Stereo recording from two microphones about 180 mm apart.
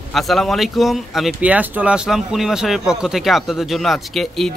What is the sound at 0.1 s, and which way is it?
Speech, centre (ahead or behind).